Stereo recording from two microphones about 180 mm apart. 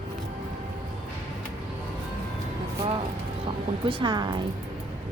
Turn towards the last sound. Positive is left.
turn(degrees=-25)  # may be behind; listen again after turning